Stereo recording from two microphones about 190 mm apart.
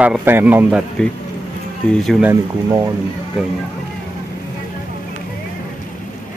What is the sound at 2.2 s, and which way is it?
Speech, 15° right (ahead or behind).